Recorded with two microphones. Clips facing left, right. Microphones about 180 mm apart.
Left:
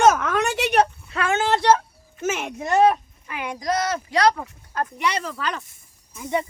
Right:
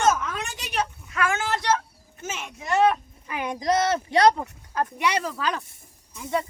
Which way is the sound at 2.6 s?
40° left (ahead or behind).